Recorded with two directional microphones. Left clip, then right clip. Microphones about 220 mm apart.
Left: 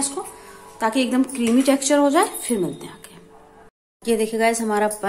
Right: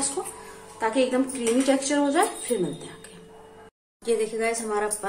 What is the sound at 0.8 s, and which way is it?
A woman's voice, 50° left (ahead or behind).